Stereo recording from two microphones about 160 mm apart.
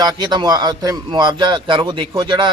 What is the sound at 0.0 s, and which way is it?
A man's voice, 25° right (ahead or behind).